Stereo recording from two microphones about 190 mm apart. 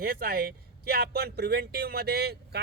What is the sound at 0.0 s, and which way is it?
Speech, 50° right (ahead or behind).